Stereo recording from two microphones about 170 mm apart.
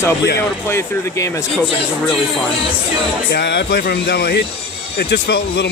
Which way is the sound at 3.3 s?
75° left (ahead or behind).